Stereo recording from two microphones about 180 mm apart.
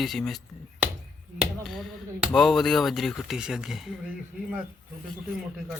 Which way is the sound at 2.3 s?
Centre (ahead or behind).